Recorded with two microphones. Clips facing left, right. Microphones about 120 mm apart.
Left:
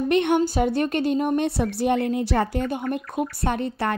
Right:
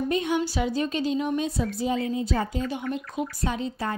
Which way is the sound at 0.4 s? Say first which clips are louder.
Left 5 dB; 50° left (ahead or behind).